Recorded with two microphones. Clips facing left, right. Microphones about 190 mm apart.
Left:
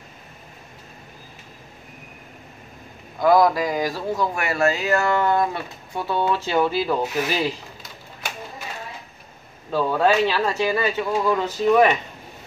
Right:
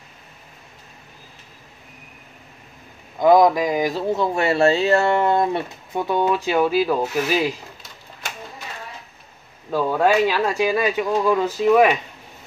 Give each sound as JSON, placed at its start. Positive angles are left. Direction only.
{"t": 3.2, "sound": "speech", "side_deg": -20}
{"t": 9.7, "sound": "speech", "side_deg": -10}